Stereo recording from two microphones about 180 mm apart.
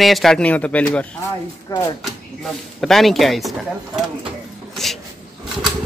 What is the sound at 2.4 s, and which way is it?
A man's voice, centre (ahead or behind).